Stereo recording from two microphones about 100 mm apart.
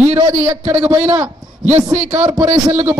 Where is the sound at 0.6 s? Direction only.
90° right.